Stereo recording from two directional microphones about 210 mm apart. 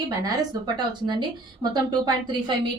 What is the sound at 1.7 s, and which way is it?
Speech, 20° right (ahead or behind).